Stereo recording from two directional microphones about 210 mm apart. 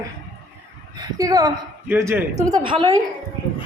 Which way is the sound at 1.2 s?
20° right (ahead or behind).